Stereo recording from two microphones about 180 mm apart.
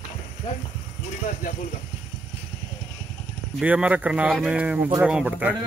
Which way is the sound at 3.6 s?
10° right (ahead or behind).